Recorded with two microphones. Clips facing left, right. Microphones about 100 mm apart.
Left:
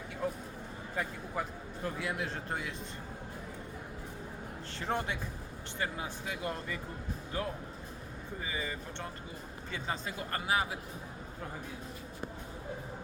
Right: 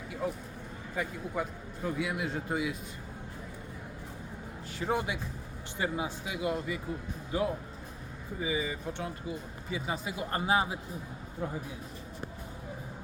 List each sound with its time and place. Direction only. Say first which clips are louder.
0.9 s a man's voice: right 3 dB; centre (ahead or behind)
4.8 s speech: right 3 dB; 10° right (ahead or behind)
10.3 s speech: right 4 dB; 25° right (ahead or behind)